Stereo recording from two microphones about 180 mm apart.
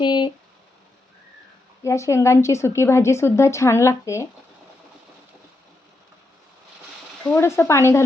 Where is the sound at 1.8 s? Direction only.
15° left (ahead or behind).